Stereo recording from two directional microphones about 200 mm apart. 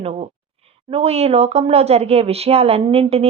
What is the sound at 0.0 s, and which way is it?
Speech, 30° right (ahead or behind).